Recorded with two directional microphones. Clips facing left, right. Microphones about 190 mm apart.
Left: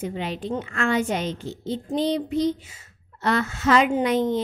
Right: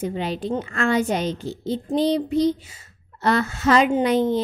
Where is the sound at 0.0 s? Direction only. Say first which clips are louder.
Right 3 dB; 35° right (ahead or behind).